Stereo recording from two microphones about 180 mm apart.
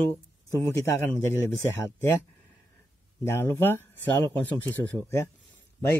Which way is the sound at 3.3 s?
15° left (ahead or behind).